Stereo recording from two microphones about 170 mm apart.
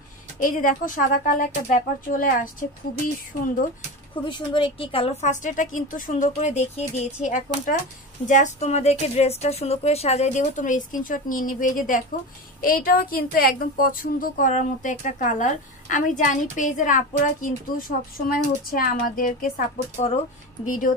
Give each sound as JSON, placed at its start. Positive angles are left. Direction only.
{"t": 0.4, "sound": "a woman's voice", "side_deg": 50}
{"t": 4.1, "sound": "a woman's voice", "side_deg": 30}
{"t": 5.3, "sound": "a woman's voice", "side_deg": 50}
{"t": 20.6, "sound": "a woman's voice", "side_deg": 50}